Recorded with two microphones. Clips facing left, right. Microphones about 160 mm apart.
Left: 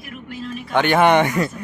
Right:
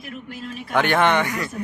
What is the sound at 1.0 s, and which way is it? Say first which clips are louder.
Speech: left 5 dB; 20° left (ahead or behind).